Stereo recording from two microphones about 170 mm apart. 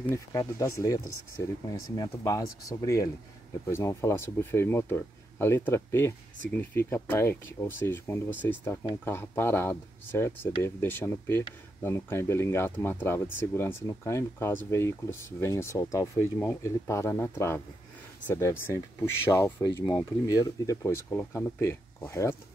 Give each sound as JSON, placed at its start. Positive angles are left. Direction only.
{"t": 0.1, "sound": "speech", "side_deg": 20}